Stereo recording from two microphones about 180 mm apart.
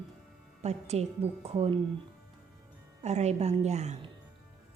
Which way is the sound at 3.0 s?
40° right (ahead or behind).